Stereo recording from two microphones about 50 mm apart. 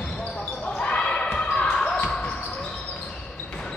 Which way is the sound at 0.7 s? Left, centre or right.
Centre.